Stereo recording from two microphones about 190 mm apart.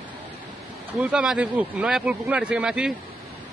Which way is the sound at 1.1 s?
5° right (ahead or behind).